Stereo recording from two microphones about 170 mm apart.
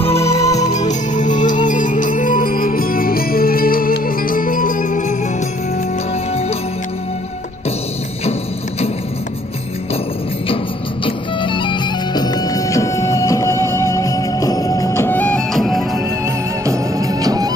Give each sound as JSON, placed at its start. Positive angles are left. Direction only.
{"t": 0.0, "sound": "music", "side_deg": 35}
{"t": 0.4, "sound": "music", "side_deg": 20}
{"t": 0.7, "sound": "music", "side_deg": 45}
{"t": 8.3, "sound": "music", "side_deg": 35}
{"t": 11.1, "sound": "music", "side_deg": 30}
{"t": 16.6, "sound": "music", "side_deg": -20}